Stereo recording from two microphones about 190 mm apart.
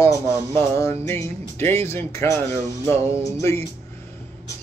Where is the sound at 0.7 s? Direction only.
15° left (ahead or behind).